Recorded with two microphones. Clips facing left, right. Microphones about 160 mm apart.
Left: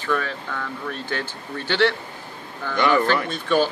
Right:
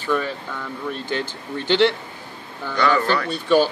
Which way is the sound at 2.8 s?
15° left (ahead or behind).